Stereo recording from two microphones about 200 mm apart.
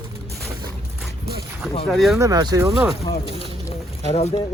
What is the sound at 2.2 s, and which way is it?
Speech, 20° right (ahead or behind).